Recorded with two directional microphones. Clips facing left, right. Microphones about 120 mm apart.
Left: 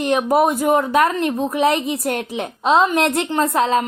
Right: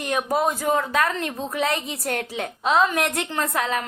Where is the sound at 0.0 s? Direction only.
20° left (ahead or behind).